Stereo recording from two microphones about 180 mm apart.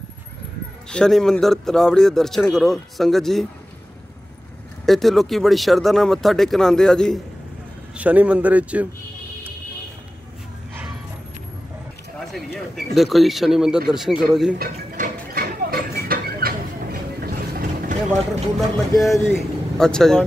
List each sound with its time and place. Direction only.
0.8 s a man's voice: 5° left (ahead or behind)
4.8 s a man's voice: centre (ahead or behind)
7.9 s a man's voice: 10° right (ahead or behind)
12.9 s a man's voice: centre (ahead or behind)
14.6 s horse: 55° right (ahead or behind)
17.2 s vehicle: 55° right (ahead or behind)
18.6 s a man's voice: centre (ahead or behind)